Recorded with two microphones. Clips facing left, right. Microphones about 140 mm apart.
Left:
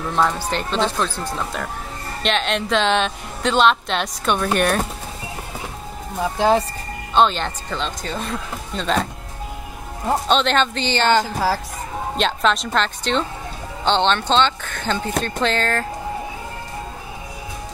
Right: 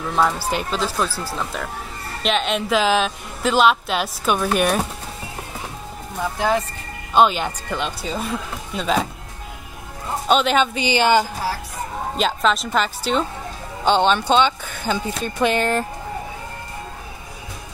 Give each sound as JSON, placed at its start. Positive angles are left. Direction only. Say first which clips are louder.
{"t": 0.1, "sound": "speech", "louder": "right 1 dB", "side_deg": -5}
{"t": 6.3, "sound": "speech", "louder": "left 4 dB", "side_deg": 30}
{"t": 7.2, "sound": "speech", "louder": "right 1 dB", "side_deg": -10}
{"t": 10.2, "sound": "speech", "louder": "right 3 dB", "side_deg": -5}